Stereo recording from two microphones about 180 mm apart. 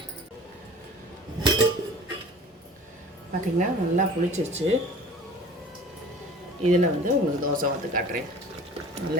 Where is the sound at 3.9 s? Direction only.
40° right (ahead or behind).